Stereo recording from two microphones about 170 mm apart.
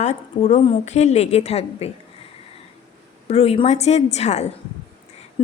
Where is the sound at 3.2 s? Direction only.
40° left (ahead or behind).